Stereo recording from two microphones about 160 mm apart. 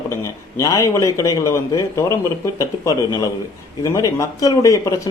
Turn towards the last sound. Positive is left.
turn(degrees=20)  # may be behind; listen again after turning